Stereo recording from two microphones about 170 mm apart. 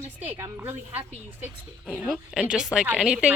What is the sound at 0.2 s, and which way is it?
A woman's voice, 15° right (ahead or behind).